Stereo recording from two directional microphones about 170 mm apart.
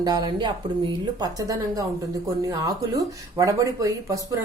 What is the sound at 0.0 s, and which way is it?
Speech, 25° right (ahead or behind).